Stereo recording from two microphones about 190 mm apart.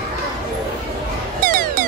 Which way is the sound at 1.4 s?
50° right (ahead or behind).